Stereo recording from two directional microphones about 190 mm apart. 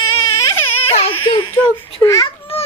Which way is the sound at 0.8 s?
30° left (ahead or behind).